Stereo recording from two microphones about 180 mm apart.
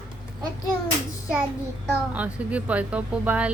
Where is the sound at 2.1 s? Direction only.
10° right (ahead or behind).